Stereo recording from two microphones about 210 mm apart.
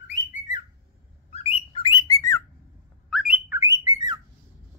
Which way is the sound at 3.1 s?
5° right (ahead or behind).